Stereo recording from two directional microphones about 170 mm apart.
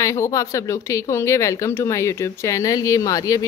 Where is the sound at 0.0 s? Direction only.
15° left (ahead or behind).